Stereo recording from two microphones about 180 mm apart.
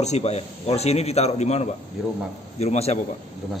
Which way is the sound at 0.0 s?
35° left (ahead or behind).